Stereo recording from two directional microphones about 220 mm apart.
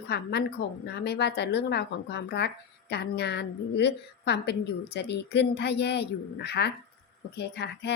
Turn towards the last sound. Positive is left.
turn(degrees=50)  # may be behind; listen again after turning